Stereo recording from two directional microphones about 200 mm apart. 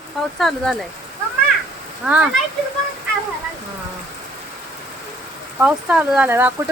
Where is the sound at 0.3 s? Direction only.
Centre (ahead or behind).